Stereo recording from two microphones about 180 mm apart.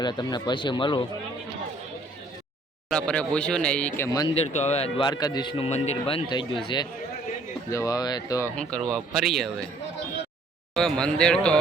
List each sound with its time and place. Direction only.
0.0 s a man's voice: 25° left (ahead or behind)
2.9 s a man's voice: 5° left (ahead or behind)
4.4 s a man's voice: 40° left (ahead or behind); by 8.4 s 20° left (ahead or behind)
8.5 s speech: 5° left (ahead or behind)
10.8 s speech: 5° left (ahead or behind)